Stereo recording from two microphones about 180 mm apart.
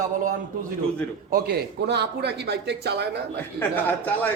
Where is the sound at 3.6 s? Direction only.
10° left (ahead or behind).